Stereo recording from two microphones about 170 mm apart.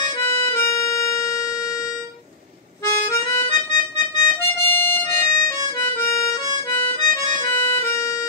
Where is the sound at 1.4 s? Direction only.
20° left (ahead or behind).